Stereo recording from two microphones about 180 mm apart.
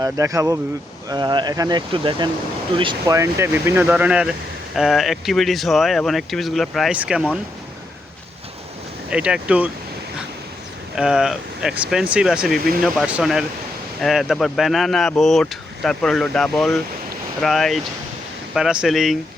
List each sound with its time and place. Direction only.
0.0 s speech: 20° right (ahead or behind)
3.2 s speech: 15° right (ahead or behind)
9.0 s speech: 5° right (ahead or behind)
10.9 s speech: 5° right (ahead or behind)